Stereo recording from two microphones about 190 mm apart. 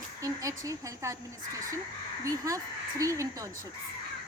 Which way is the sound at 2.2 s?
15° right (ahead or behind).